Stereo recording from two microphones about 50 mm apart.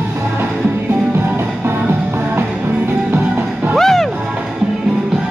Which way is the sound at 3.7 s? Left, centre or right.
Centre.